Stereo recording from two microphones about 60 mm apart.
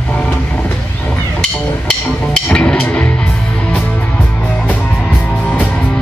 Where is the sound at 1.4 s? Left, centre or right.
Centre.